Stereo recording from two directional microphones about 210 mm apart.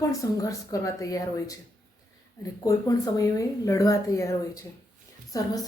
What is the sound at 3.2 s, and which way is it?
Speech, 15° left (ahead or behind).